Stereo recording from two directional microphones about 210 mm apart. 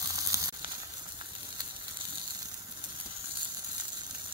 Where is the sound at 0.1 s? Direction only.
15° right (ahead or behind).